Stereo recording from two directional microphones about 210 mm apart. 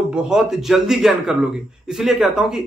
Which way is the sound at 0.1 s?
Centre (ahead or behind).